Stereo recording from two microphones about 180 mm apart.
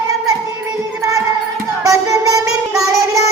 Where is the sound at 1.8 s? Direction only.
20° right (ahead or behind).